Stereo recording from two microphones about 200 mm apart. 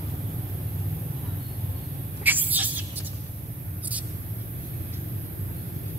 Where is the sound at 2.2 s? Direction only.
10° right (ahead or behind).